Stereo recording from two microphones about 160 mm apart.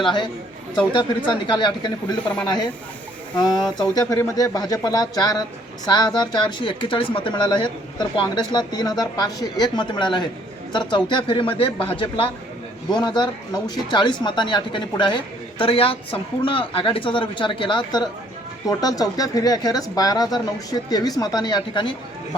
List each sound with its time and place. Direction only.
0.0 s speech: 30° left (ahead or behind)
2.2 s speech: 5° left (ahead or behind)
3.3 s speech: 25° left (ahead or behind)